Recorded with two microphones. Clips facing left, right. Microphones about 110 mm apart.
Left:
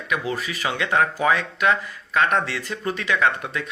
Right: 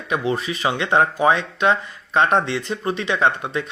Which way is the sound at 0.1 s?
30° right (ahead or behind).